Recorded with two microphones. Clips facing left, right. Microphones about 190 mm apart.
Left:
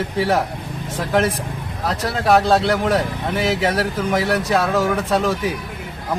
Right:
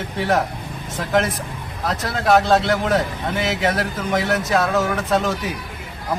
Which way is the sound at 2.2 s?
10° left (ahead or behind).